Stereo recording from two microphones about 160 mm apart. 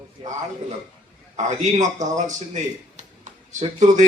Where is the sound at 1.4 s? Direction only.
45° right (ahead or behind).